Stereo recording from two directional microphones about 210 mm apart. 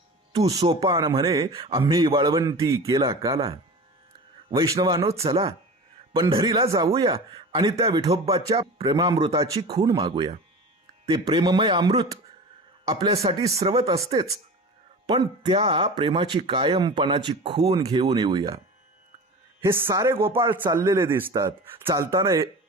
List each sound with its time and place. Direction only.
0.3 s a man's voice: 20° right (ahead or behind)
3.3 s speech: 25° right (ahead or behind)
4.5 s a man's voice: 15° right (ahead or behind)
15.0 s speech: 20° right (ahead or behind)
18.1 s speech: 20° right (ahead or behind)
19.6 s a man's voice: 15° right (ahead or behind)